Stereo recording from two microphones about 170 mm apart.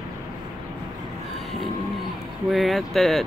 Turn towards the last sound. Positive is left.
turn(degrees=0)  # may be behind; listen again after turning